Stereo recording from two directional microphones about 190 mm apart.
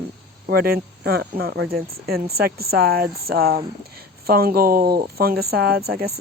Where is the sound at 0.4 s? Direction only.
55° right (ahead or behind).